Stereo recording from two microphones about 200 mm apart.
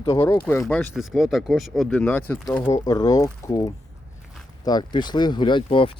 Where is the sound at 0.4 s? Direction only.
5° left (ahead or behind).